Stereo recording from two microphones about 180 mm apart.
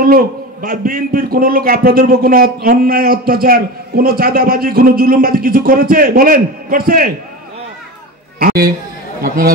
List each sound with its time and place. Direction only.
0.0 s a man's voice: 55° right (ahead or behind)
8.4 s a man's voice: 55° right (ahead or behind)